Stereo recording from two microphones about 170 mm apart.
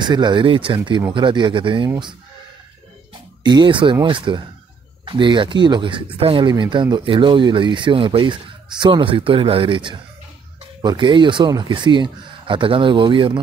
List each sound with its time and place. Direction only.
0.0 s speech: 25° right (ahead or behind)
3.4 s speech: 25° right (ahead or behind)